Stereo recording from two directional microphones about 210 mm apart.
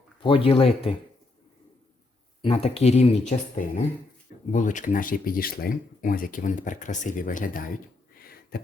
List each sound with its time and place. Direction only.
0.2 s speech: 25° left (ahead or behind)
2.4 s speech: 30° left (ahead or behind)
8.5 s a sound: 45° left (ahead or behind)